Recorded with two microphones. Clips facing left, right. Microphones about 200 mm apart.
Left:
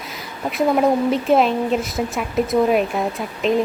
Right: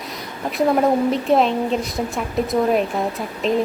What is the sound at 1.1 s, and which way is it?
Speech, centre (ahead or behind).